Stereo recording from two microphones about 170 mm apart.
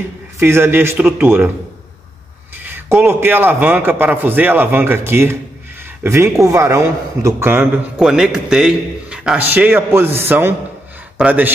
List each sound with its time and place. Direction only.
0.4 s a man's voice: 15° right (ahead or behind)
2.6 s a man's voice: 15° right (ahead or behind)
8.0 s a man's voice: 5° right (ahead or behind)